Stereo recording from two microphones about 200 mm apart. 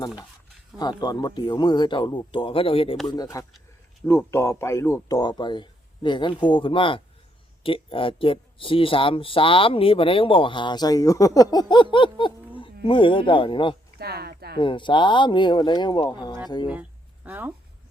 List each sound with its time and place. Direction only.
0.8 s speech: 20° left (ahead or behind)
14.0 s speech: 50° right (ahead or behind)
14.6 s speech: 25° left (ahead or behind)
17.2 s speech: 10° right (ahead or behind)